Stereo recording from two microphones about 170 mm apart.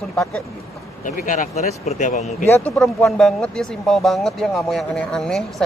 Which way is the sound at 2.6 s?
5° left (ahead or behind).